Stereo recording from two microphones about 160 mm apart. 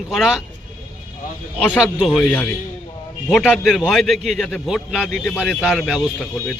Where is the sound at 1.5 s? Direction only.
5° left (ahead or behind).